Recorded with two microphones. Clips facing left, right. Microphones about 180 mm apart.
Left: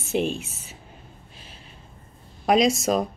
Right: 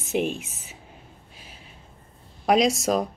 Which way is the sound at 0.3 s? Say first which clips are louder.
Left 2 dB; 35° left (ahead or behind).